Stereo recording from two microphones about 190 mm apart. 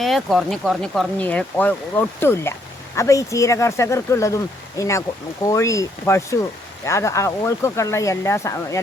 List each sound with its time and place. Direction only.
0.0 s speech: centre (ahead or behind); by 8.8 s 15° left (ahead or behind)